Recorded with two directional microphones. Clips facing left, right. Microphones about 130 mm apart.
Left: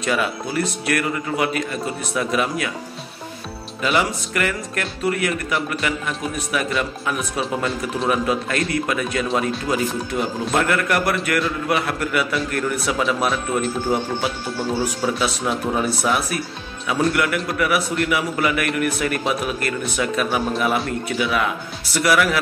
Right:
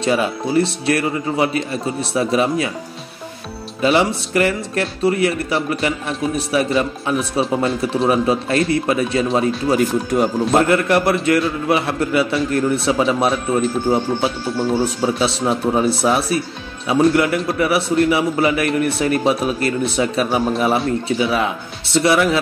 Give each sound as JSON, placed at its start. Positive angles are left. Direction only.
{"t": 0.0, "sound": "a man's voice", "side_deg": -30}
{"t": 3.8, "sound": "a man's voice", "side_deg": -30}
{"t": 15.1, "sound": "a man's voice", "side_deg": -30}